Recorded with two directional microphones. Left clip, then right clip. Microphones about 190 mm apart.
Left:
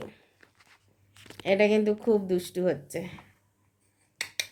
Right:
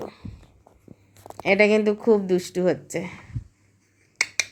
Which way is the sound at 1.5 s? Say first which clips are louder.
Right 5 dB; 40° right (ahead or behind).